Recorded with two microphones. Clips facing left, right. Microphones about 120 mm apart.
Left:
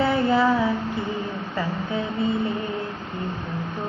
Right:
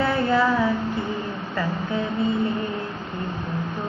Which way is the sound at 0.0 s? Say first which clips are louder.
Left 1 dB; 20° left (ahead or behind).